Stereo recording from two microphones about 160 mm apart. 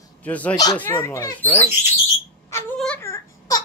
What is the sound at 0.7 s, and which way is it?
Speech, 15° left (ahead or behind).